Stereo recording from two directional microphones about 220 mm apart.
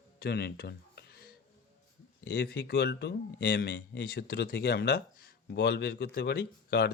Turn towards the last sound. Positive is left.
turn(degrees=50)  # may be behind; listen again after turning